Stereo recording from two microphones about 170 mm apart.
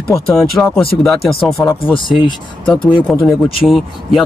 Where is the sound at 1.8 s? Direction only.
30° left (ahead or behind).